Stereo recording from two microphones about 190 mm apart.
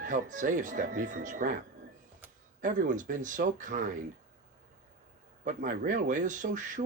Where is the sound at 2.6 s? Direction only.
40° right (ahead or behind).